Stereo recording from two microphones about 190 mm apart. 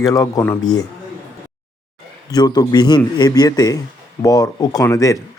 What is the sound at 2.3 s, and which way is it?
Speech, 20° left (ahead or behind).